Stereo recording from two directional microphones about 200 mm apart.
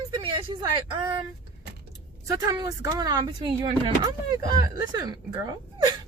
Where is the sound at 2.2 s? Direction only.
15° right (ahead or behind).